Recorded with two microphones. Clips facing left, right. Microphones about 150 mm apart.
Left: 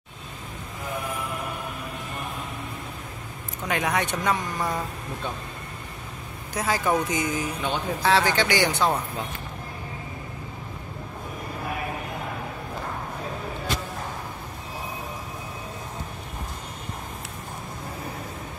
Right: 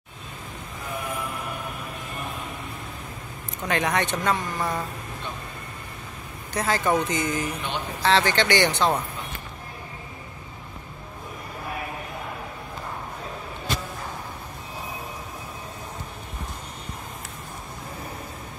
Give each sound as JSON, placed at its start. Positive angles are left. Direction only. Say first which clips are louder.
{"t": 3.6, "sound": "speech", "louder": "right 1 dB", "side_deg": 5}
{"t": 6.5, "sound": "speech", "louder": "right 1 dB", "side_deg": 5}